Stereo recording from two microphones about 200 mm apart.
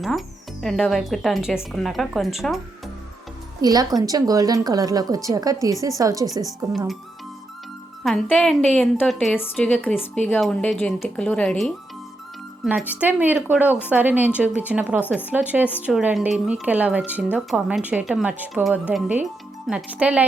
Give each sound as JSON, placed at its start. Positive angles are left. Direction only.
{"t": 0.0, "sound": "a woman's voice", "side_deg": 0}
{"t": 3.6, "sound": "a woman's voice", "side_deg": -20}
{"t": 8.0, "sound": "a woman's voice", "side_deg": 0}